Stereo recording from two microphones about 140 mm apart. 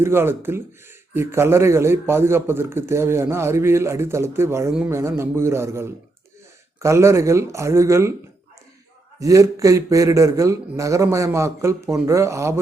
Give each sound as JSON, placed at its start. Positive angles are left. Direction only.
{"t": 0.0, "sound": "a man's voice", "side_deg": -15}
{"t": 9.2, "sound": "a man's voice", "side_deg": -25}